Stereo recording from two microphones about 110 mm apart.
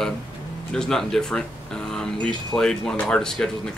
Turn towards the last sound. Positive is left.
turn(degrees=5)  # may be behind; listen again after turning